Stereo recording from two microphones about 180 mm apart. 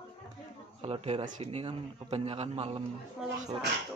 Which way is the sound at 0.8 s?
30° right (ahead or behind).